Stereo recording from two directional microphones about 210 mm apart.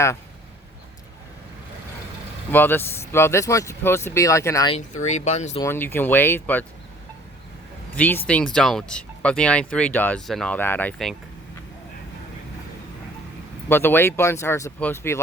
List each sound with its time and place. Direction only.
2.5 s speech: 10° left (ahead or behind)
5.0 s speech: 35° left (ahead or behind)
5.6 s speech: 10° left (ahead or behind)
7.9 s speech: 10° left (ahead or behind)
13.7 s speech: 10° left (ahead or behind)